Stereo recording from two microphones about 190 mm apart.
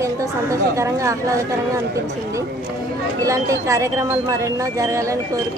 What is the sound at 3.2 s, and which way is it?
Speech, 15° right (ahead or behind).